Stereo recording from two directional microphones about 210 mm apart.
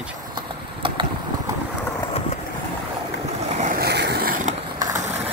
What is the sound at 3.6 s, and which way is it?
Vehicle, 45° right (ahead or behind).